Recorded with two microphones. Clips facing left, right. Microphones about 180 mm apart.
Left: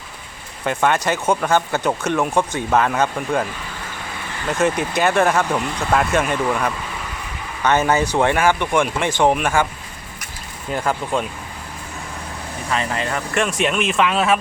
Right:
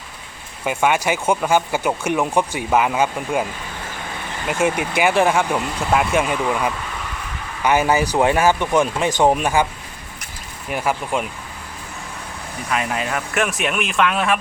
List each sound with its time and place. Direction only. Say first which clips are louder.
0.6 s speech: even; 10° right (ahead or behind)
4.4 s speech: left 1 dB; 10° right (ahead or behind)
10.7 s speech: even; 10° right (ahead or behind)
12.7 s speech: even; 10° right (ahead or behind)